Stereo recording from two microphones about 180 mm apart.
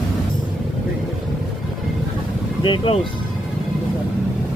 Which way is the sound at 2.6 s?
25° left (ahead or behind).